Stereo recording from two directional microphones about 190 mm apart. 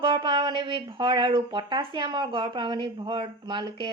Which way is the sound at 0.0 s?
25° right (ahead or behind).